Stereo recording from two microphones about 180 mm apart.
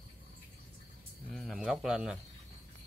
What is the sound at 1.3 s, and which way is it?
Speech, 5° left (ahead or behind).